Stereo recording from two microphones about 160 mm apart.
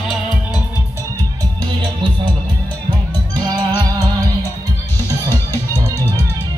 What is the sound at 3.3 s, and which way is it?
Music, 25° right (ahead or behind).